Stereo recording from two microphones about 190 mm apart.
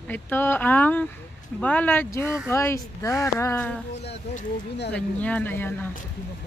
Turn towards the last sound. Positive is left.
turn(degrees=10)  # may be behind; listen again after turning